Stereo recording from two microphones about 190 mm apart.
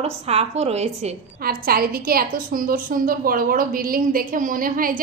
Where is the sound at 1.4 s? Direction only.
50° right (ahead or behind).